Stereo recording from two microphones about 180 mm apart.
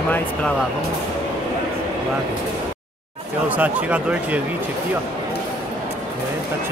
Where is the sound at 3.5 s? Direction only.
5° right (ahead or behind).